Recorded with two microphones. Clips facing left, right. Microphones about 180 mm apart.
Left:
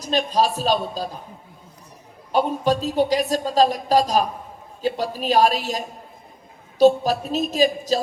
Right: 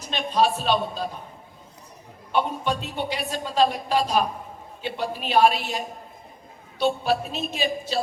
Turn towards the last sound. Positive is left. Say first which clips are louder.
# left 7 dB
turn(degrees=40)  # may be behind; listen again after turning